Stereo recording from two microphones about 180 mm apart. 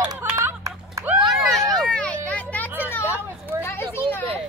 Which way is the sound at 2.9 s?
10° left (ahead or behind).